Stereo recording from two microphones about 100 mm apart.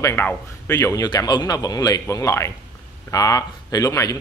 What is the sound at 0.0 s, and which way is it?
Speech, 20° left (ahead or behind).